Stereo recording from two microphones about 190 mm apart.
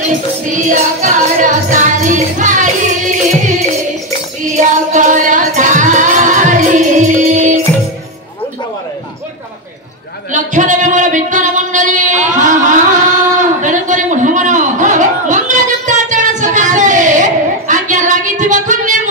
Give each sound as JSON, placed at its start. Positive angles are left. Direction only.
{"t": 0.5, "sound": "music", "side_deg": -40}
{"t": 4.5, "sound": "music", "side_deg": -40}
{"t": 10.3, "sound": "a sound", "side_deg": -40}